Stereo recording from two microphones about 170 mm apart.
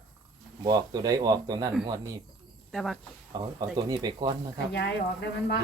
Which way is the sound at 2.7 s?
Centre (ahead or behind).